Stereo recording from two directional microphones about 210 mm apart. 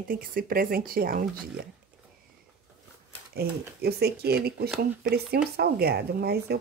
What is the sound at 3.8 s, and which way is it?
Speech, 50° right (ahead or behind).